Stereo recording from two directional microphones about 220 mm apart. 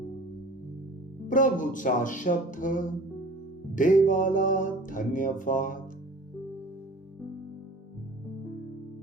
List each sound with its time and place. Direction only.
1.3 s music: 35° left (ahead or behind)